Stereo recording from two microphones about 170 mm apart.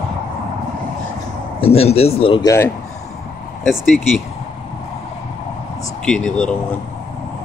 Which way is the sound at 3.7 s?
Centre (ahead or behind).